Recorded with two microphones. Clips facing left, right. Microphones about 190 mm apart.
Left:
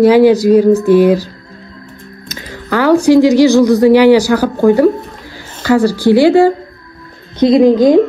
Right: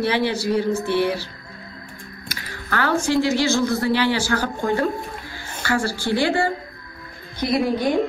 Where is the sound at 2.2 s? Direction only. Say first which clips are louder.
Left 9 dB; 20° left (ahead or behind).